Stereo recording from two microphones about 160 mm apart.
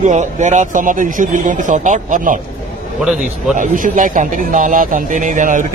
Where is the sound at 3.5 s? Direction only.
55° right (ahead or behind).